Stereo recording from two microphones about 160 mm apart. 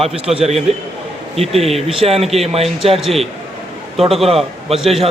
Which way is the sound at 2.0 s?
40° right (ahead or behind).